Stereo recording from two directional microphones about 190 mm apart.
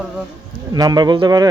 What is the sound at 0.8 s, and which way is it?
Speech, 20° right (ahead or behind).